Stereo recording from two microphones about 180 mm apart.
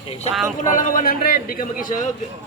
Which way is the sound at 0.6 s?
50° left (ahead or behind).